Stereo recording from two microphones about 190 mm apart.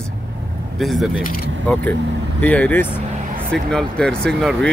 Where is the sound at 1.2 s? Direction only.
45° left (ahead or behind).